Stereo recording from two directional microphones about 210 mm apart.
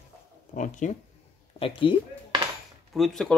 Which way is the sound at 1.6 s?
25° left (ahead or behind).